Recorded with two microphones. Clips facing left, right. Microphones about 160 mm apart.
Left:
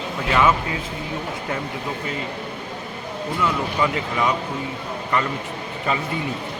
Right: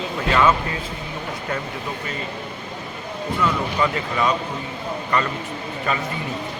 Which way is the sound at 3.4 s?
15° left (ahead or behind).